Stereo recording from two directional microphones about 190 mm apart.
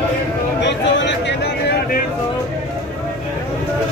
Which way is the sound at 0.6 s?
65° left (ahead or behind).